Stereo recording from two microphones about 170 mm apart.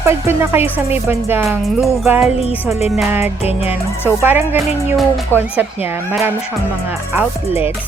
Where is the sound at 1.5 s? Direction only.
Centre (ahead or behind).